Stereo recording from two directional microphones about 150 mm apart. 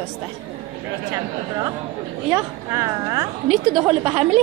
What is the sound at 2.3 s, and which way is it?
Speech, 20° right (ahead or behind).